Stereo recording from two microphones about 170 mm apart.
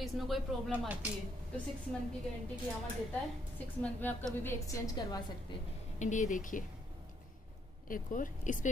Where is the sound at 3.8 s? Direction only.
10° left (ahead or behind).